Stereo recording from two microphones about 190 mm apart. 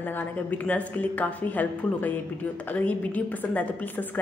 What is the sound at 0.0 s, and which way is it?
A woman's voice, 10° left (ahead or behind).